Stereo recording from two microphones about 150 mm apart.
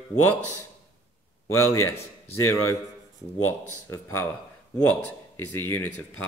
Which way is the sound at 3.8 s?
20° left (ahead or behind).